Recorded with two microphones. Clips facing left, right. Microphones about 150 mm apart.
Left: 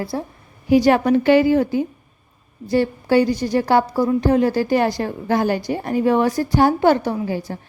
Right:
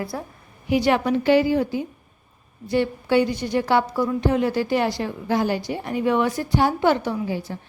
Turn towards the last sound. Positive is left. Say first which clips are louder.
# left 3 dB
turn(degrees=45)  # may be behind; listen again after turning